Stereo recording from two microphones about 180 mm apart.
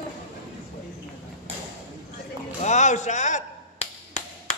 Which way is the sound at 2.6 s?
40° left (ahead or behind).